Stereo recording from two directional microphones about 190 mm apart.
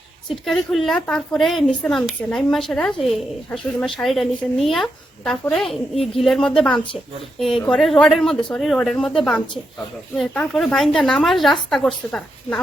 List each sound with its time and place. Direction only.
0.4 s a woman's voice: centre (ahead or behind)